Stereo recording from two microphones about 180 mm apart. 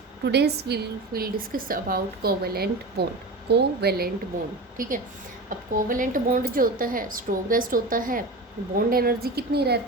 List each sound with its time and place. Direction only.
0.3 s a woman's voice: 65° right (ahead or behind)
4.8 s a woman's voice: 50° right (ahead or behind)